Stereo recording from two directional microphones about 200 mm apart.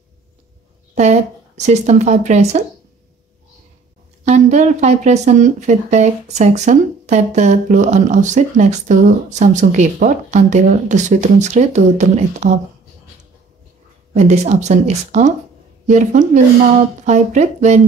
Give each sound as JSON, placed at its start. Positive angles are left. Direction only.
{"t": 0.9, "sound": "speech", "side_deg": -35}
{"t": 4.2, "sound": "speech", "side_deg": -35}
{"t": 14.1, "sound": "speech", "side_deg": -35}